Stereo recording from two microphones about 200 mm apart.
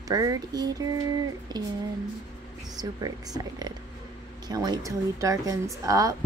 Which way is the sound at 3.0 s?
20° right (ahead or behind).